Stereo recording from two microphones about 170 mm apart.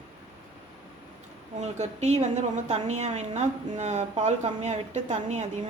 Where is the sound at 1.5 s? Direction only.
40° right (ahead or behind).